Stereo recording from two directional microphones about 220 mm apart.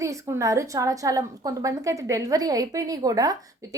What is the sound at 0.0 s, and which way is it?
A woman's voice, 15° right (ahead or behind).